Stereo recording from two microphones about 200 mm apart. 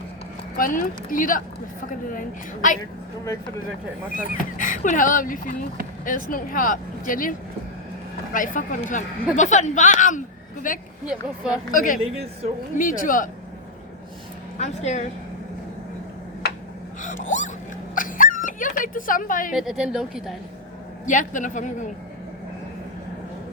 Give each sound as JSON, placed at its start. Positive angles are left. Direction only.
{"t": 0.5, "sound": "speech", "side_deg": 45}
{"t": 4.1, "sound": "speech", "side_deg": 45}
{"t": 11.0, "sound": "a woman's voice", "side_deg": -5}
{"t": 11.7, "sound": "speech", "side_deg": 40}
{"t": 14.6, "sound": "speech", "side_deg": 35}
{"t": 17.0, "sound": "gasp", "side_deg": 40}
{"t": 17.9, "sound": "a sound", "side_deg": 40}
{"t": 19.5, "sound": "a woman's voice", "side_deg": 0}
{"t": 21.1, "sound": "speech", "side_deg": 40}